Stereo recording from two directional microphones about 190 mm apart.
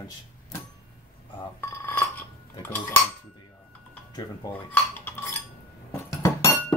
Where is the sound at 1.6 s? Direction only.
10° left (ahead or behind).